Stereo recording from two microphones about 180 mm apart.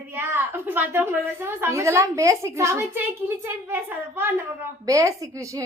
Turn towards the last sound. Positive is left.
turn(degrees=-15)  # may be behind; listen again after turning